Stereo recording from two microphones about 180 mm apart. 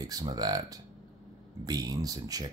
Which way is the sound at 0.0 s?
20° right (ahead or behind).